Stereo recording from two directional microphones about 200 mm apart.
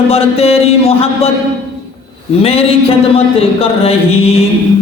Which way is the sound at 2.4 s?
30° left (ahead or behind).